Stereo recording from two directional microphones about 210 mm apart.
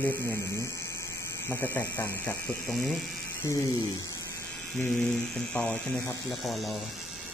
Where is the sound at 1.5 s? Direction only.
10° left (ahead or behind).